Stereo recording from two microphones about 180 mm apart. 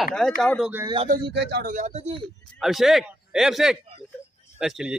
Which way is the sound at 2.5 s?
Centre (ahead or behind).